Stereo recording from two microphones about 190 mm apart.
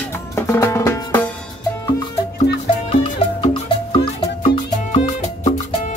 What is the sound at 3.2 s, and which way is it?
Music, 30° left (ahead or behind).